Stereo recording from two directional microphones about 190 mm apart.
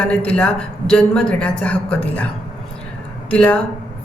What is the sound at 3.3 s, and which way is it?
Speech, 5° left (ahead or behind).